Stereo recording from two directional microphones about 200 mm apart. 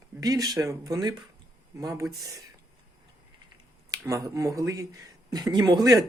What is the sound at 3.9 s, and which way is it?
Speech, 15° right (ahead or behind).